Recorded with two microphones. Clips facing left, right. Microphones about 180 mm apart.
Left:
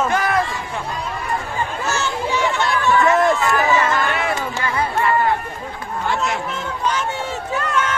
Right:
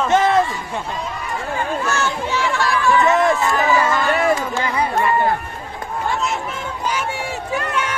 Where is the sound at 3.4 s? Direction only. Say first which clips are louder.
Even; 20° right (ahead or behind).